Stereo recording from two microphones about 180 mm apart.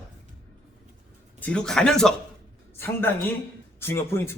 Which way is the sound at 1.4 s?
5° left (ahead or behind).